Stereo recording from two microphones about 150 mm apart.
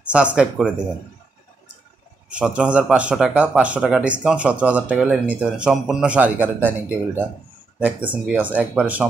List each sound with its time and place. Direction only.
0.0 s speech: 10° right (ahead or behind)
2.2 s speech: 5° right (ahead or behind)
7.8 s speech: 10° right (ahead or behind)